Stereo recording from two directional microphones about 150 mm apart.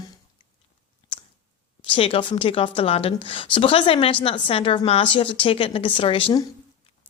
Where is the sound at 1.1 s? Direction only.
35° left (ahead or behind).